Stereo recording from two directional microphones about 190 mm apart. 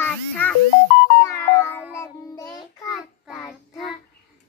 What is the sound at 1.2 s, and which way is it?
Music, 15° left (ahead or behind).